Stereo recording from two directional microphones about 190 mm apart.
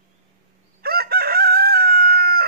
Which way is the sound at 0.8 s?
55° right (ahead or behind).